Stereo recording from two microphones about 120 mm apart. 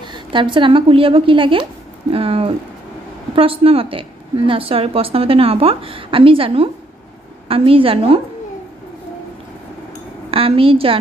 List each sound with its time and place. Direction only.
0.0 s a woman's voice: 40° right (ahead or behind)
10.3 s a woman's voice: 55° right (ahead or behind)